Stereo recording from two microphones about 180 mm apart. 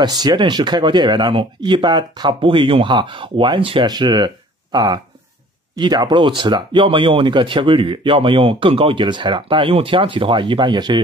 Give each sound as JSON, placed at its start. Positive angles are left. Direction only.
{"t": 0.0, "sound": "speech", "side_deg": -20}